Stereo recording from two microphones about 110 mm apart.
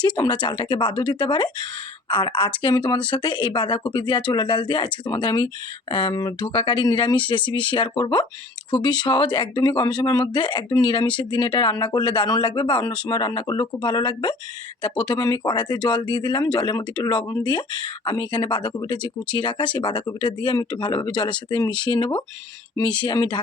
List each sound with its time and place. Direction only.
0.0 s speech: 45° left (ahead or behind)